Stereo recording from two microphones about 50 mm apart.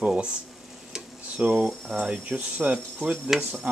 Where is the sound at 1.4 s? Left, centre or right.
Right.